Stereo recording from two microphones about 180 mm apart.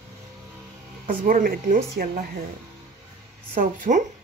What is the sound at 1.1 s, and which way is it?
Speech, 50° right (ahead or behind).